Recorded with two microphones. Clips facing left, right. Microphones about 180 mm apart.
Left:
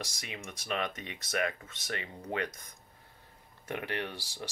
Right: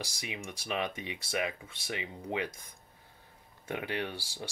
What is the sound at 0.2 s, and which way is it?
Speech, 10° right (ahead or behind).